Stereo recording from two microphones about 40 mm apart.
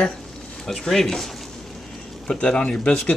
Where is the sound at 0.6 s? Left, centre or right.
Centre.